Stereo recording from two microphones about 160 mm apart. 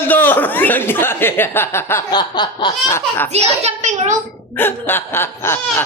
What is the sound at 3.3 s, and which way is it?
Speech, 40° right (ahead or behind).